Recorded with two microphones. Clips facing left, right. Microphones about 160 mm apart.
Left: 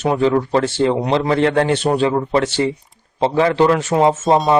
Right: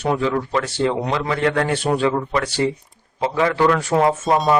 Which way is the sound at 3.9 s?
20° left (ahead or behind).